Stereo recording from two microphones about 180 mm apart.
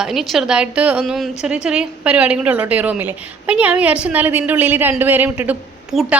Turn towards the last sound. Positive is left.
turn(degrees=-5)  # may be behind; listen again after turning